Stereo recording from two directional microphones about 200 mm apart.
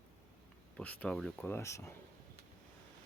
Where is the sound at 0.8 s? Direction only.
5° left (ahead or behind).